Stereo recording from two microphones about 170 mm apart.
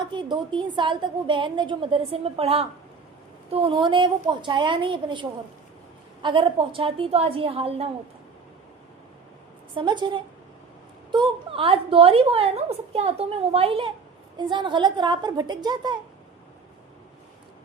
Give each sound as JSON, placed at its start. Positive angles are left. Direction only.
{"t": 0.0, "sound": "a woman's voice", "side_deg": -25}
{"t": 6.2, "sound": "a woman's voice", "side_deg": -30}
{"t": 9.7, "sound": "a woman's voice", "side_deg": -25}